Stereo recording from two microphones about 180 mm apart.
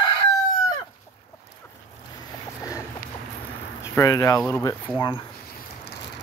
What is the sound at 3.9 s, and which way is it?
Speech, 20° left (ahead or behind).